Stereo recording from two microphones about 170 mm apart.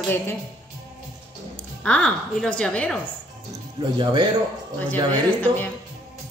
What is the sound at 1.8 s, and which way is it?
A woman's voice, 5° left (ahead or behind).